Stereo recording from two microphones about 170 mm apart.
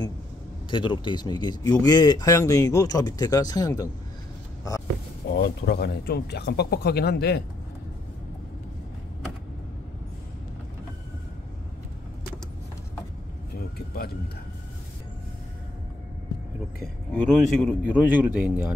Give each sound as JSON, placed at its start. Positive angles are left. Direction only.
{"t": 0.7, "sound": "speech", "side_deg": 30}
{"t": 5.3, "sound": "speech", "side_deg": 75}
{"t": 13.7, "sound": "a sound", "side_deg": 65}
{"t": 17.1, "sound": "speech", "side_deg": 5}
{"t": 17.8, "sound": "a man's voice", "side_deg": -10}